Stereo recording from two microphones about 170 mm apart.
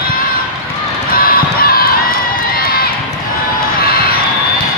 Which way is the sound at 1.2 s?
60° left (ahead or behind).